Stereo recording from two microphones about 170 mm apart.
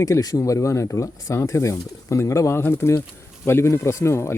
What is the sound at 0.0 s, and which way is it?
Speech, 20° left (ahead or behind).